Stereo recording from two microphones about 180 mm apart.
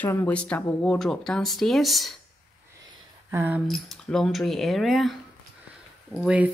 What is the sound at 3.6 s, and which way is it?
Speech, centre (ahead or behind).